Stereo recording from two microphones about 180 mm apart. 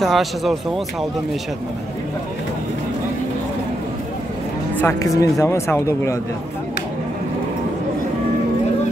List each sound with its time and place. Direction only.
0.0 s speech: centre (ahead or behind)
4.7 s speech: 15° left (ahead or behind)